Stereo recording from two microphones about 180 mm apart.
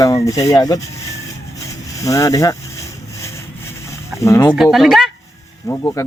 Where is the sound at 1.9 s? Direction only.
20° left (ahead or behind).